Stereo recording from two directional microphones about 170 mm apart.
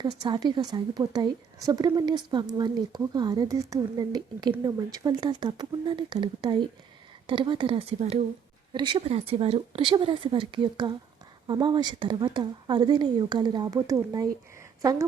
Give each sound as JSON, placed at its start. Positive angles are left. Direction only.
{"t": 0.0, "sound": "a woman's voice", "side_deg": -25}